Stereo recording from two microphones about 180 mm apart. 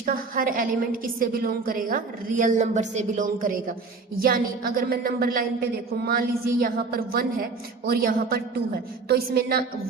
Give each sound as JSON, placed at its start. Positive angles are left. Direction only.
{"t": 0.0, "sound": "a woman's voice", "side_deg": -50}